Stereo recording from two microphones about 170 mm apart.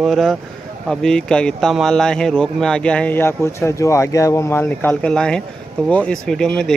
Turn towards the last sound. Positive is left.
turn(degrees=5)  # may be behind; listen again after turning